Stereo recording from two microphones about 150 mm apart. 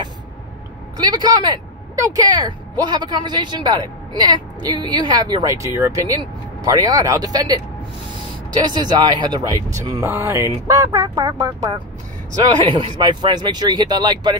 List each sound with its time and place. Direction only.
0.9 s speech: 25° right (ahead or behind)
8.7 s speech: 25° right (ahead or behind)